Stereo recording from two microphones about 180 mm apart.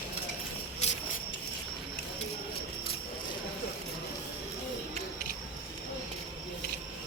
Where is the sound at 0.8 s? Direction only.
35° left (ahead or behind).